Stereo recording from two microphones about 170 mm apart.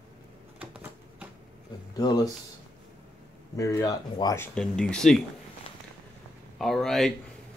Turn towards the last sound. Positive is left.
turn(degrees=0)  # may be behind; listen again after turning